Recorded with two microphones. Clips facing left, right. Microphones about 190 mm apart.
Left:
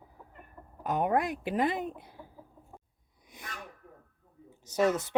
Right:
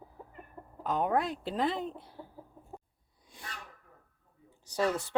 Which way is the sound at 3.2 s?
20° left (ahead or behind).